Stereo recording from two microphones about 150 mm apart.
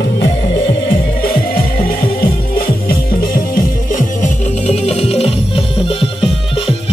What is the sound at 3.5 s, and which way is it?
Music, 60° left (ahead or behind).